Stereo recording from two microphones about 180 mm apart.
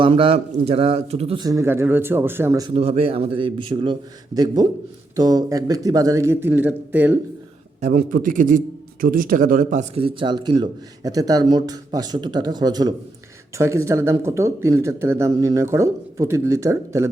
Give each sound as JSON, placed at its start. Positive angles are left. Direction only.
{"t": 0.0, "sound": "a man's voice", "side_deg": -30}
{"t": 1.5, "sound": "speech", "side_deg": -15}
{"t": 2.6, "sound": "speech", "side_deg": -35}
{"t": 7.9, "sound": "a man's voice", "side_deg": -50}
{"t": 9.9, "sound": "speech", "side_deg": -30}